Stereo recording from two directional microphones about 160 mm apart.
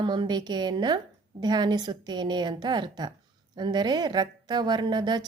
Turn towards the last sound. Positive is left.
turn(degrees=-25)  # may be behind; listen again after turning